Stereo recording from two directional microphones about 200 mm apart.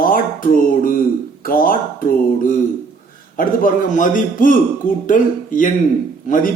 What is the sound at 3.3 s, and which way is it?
Speech, 45° left (ahead or behind).